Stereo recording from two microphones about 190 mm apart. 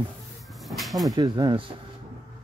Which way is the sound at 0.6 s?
Centre (ahead or behind).